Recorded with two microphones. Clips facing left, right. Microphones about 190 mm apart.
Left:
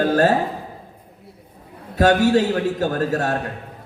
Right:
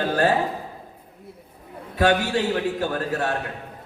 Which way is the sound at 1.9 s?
45° left (ahead or behind).